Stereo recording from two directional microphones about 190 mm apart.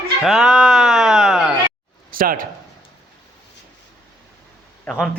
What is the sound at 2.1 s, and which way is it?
Speech, 45° right (ahead or behind).